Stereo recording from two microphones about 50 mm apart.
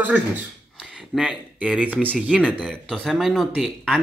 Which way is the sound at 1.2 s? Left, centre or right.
Centre.